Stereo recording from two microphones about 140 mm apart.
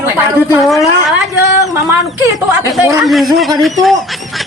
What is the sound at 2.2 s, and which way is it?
Speech, 25° right (ahead or behind).